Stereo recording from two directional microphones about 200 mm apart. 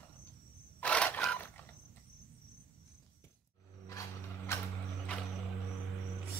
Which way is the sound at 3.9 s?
15° left (ahead or behind).